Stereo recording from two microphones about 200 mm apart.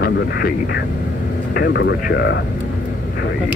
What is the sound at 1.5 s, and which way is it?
Speech, 55° left (ahead or behind).